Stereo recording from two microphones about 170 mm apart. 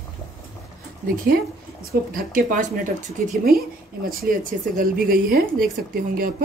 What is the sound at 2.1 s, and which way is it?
Speech, 55° right (ahead or behind).